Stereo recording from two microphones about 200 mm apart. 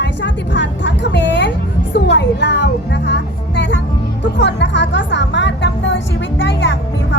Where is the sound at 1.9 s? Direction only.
60° left (ahead or behind).